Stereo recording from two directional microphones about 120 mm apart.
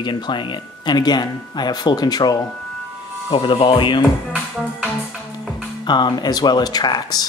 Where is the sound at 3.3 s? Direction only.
45° left (ahead or behind).